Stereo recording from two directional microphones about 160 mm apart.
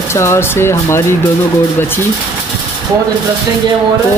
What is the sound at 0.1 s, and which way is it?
Speech, 15° left (ahead or behind).